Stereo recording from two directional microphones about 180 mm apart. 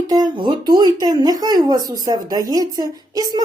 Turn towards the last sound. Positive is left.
turn(degrees=-20)  # may be behind; listen again after turning